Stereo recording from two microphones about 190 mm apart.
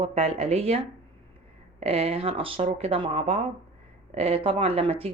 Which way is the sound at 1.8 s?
30° right (ahead or behind).